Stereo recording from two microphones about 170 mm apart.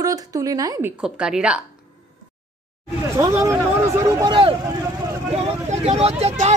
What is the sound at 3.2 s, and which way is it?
A man's voice, 15° right (ahead or behind).